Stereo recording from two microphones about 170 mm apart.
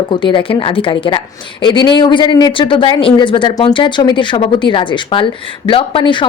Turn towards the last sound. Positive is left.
turn(degrees=30)  # may be behind; listen again after turning